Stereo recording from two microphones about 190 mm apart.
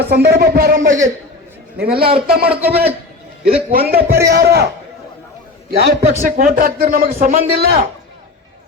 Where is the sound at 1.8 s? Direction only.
55° right (ahead or behind).